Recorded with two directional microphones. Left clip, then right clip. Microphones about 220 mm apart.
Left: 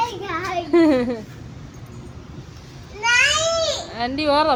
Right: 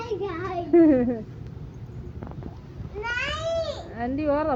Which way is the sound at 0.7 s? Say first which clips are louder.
Left 1 dB; 20° left (ahead or behind).